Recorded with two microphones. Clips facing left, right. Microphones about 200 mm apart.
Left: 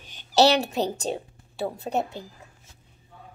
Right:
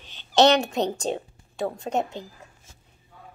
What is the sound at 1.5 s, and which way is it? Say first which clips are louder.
Speech: right 1 dB; 5° left (ahead or behind).